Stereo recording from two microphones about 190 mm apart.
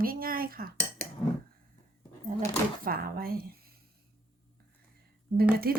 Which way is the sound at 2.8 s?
50° right (ahead or behind).